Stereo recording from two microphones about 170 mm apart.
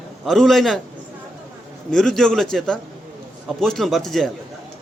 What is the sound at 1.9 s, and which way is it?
A man's voice, 5° left (ahead or behind).